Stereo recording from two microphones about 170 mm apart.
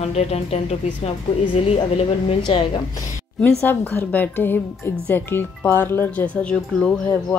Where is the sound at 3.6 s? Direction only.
10° left (ahead or behind).